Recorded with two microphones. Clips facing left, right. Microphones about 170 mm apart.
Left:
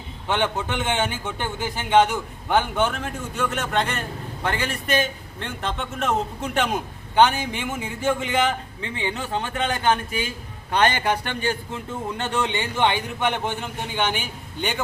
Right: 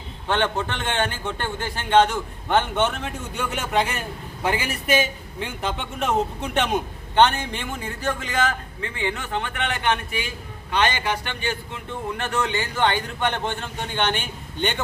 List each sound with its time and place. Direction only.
0.3 s a man's voice: 10° left (ahead or behind)
8.2 s a man's voice: 25° left (ahead or behind); by 11.5 s 45° left (ahead or behind)
12.1 s a man's voice: 25° left (ahead or behind); by 14.8 s 5° left (ahead or behind)